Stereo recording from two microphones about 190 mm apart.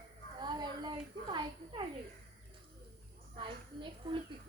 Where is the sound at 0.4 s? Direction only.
25° right (ahead or behind).